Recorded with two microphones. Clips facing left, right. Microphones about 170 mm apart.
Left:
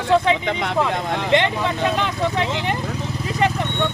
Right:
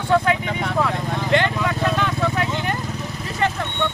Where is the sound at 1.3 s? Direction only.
20° left (ahead or behind).